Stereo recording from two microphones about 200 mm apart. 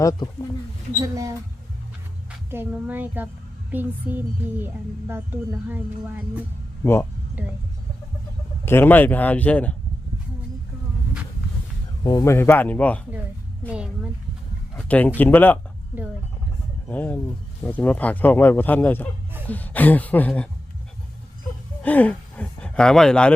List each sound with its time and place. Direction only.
0.0 s speech: 15° left (ahead or behind)
1.0 s a sound: 15° right (ahead or behind)
2.5 s a sound: 10° right (ahead or behind)
6.8 s speech: 10° left (ahead or behind)
8.6 s speech: 10° left (ahead or behind)
12.0 s speech: 15° left (ahead or behind)
13.7 s a woman's voice: 5° right (ahead or behind)
14.8 s speech: 5° left (ahead or behind)
16.9 s speech: 10° left (ahead or behind)
21.8 s speech: 10° left (ahead or behind)